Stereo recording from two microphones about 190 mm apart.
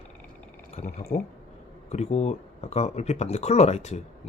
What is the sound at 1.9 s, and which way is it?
Speech, 35° left (ahead or behind).